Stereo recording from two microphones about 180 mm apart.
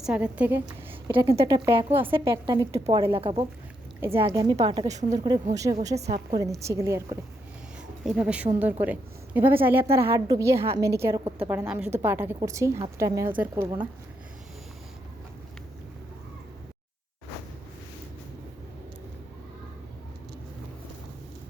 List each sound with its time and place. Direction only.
0.0 s a woman's voice: 5° right (ahead or behind)
1.1 s a woman's voice: 25° right (ahead or behind)
4.6 s a woman's voice: 35° right (ahead or behind)
5.0 s a woman's voice: 20° right (ahead or behind); by 6.4 s 35° right (ahead or behind)
6.4 s a woman's voice: 15° right (ahead or behind)